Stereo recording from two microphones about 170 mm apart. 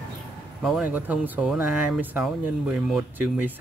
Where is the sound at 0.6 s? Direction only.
5° right (ahead or behind).